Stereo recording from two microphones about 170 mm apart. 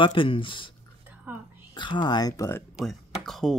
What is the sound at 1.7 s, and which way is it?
Speech, 25° left (ahead or behind).